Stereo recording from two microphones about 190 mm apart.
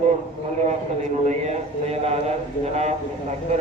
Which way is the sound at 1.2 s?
35° right (ahead or behind).